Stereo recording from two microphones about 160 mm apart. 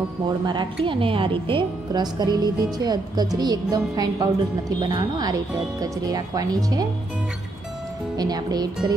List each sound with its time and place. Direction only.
0.5 s a woman's voice: 30° right (ahead or behind)
8.2 s a woman's voice: 25° right (ahead or behind)